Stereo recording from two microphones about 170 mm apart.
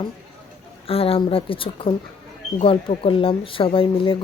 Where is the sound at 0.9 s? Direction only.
35° left (ahead or behind).